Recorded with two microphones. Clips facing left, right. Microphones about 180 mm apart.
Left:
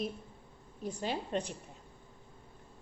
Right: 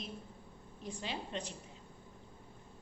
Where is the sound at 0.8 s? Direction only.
45° left (ahead or behind).